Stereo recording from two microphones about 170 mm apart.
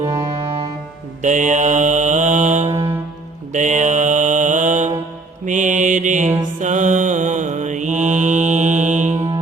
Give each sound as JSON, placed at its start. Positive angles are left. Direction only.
{"t": 0.0, "sound": "music", "side_deg": -15}
{"t": 1.2, "sound": "mantra", "side_deg": -45}
{"t": 2.6, "sound": "mantra", "side_deg": -15}
{"t": 3.5, "sound": "mantra", "side_deg": -45}